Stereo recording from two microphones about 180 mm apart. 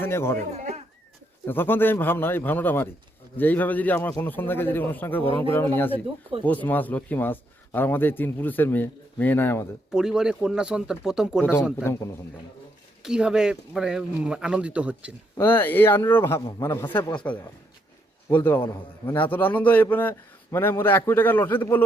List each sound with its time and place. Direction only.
0.0 s a man's voice: 15° left (ahead or behind)
0.5 s speech: 40° right (ahead or behind)
1.5 s a man's voice: 10° left (ahead or behind)
9.9 s speech: 5° right (ahead or behind)
11.8 s a man's voice: 15° left (ahead or behind)
13.0 s speech: 5° right (ahead or behind)
15.4 s a man's voice: 10° left (ahead or behind)
18.3 s a man's voice: 10° left (ahead or behind)